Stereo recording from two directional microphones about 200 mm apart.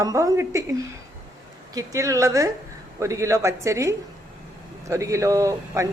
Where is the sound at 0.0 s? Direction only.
15° right (ahead or behind).